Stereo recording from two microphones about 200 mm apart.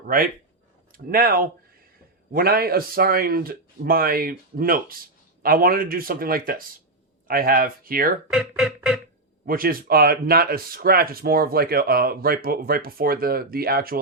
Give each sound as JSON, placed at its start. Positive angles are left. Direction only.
{"t": 0.9, "sound": "speech", "side_deg": -45}
{"t": 8.3, "sound": "speech", "side_deg": -5}
{"t": 9.5, "sound": "speech", "side_deg": -45}